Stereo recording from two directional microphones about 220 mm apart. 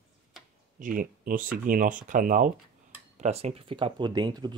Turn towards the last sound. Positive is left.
turn(degrees=-20)  # may be behind; listen again after turning